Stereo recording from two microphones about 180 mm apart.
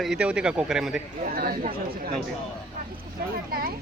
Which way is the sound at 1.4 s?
55° right (ahead or behind).